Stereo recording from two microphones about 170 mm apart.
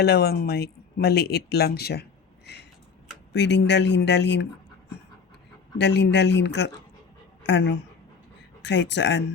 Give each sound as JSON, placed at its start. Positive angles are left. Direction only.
{"t": 0.0, "sound": "speech", "side_deg": 70}
{"t": 3.3, "sound": "speech", "side_deg": 90}
{"t": 5.7, "sound": "a woman's voice", "side_deg": 85}